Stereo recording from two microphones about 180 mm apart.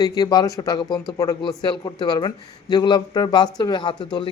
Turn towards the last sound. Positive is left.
turn(degrees=25)  # may be behind; listen again after turning